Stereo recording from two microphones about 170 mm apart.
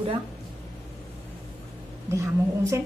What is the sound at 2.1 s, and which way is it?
Speech, 15° right (ahead or behind).